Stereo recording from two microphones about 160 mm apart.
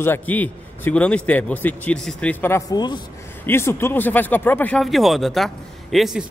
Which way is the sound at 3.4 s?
15° left (ahead or behind).